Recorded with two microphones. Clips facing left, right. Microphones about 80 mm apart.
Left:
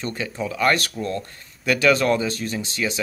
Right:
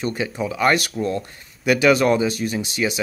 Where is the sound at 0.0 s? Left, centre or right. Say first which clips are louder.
Right 3 dB; centre.